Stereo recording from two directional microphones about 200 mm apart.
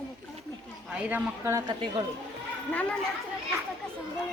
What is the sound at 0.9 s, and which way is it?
Speech, 5° right (ahead or behind).